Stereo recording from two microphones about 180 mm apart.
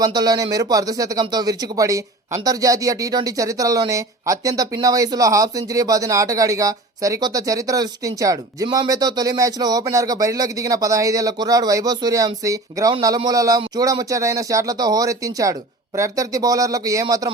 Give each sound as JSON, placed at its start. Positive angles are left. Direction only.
{"t": 0.0, "sound": "speech", "side_deg": -20}